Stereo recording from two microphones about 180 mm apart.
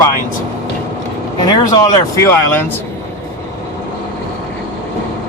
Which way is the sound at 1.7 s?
20° left (ahead or behind).